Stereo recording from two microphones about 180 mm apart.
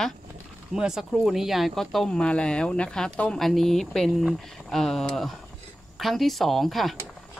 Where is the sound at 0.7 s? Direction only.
5° right (ahead or behind).